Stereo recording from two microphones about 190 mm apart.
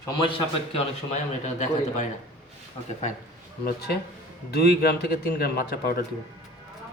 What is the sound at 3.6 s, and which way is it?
A man's voice, 55° left (ahead or behind).